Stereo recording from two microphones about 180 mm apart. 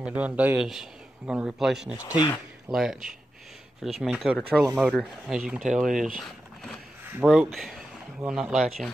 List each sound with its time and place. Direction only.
0.0 s a man's voice: 10° right (ahead or behind)
2.0 s speech: 20° left (ahead or behind)
2.7 s speech: centre (ahead or behind)
6.1 s a sound: centre (ahead or behind)
7.1 s speech: 5° right (ahead or behind)